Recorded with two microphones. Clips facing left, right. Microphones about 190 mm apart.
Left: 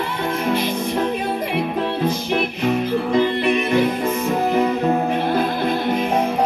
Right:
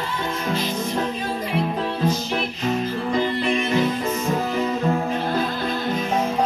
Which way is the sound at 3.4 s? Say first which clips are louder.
Left 3 dB; 60° left (ahead or behind).